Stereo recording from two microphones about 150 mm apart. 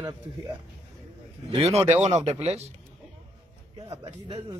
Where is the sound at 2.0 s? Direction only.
50° right (ahead or behind).